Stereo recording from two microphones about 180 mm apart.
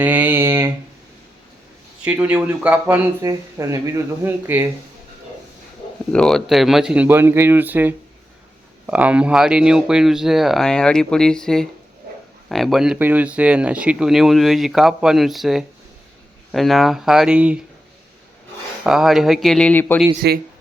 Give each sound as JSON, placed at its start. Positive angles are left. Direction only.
{"t": 0.0, "sound": "a sound", "side_deg": -10}
{"t": 2.0, "sound": "speech", "side_deg": -5}
{"t": 6.1, "sound": "speech", "side_deg": 5}
{"t": 18.9, "sound": "speech", "side_deg": 0}
{"t": 20.2, "sound": "speech", "side_deg": -65}